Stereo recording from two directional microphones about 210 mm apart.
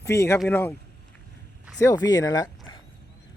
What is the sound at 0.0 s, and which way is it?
Speech, 15° left (ahead or behind).